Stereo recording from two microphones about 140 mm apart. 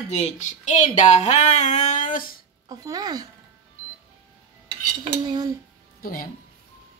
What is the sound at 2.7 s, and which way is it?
Speech, 30° right (ahead or behind).